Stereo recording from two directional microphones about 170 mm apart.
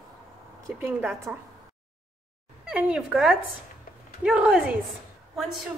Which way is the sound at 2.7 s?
5° right (ahead or behind).